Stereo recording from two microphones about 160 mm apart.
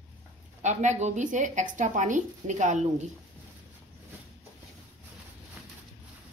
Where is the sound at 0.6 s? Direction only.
50° right (ahead or behind).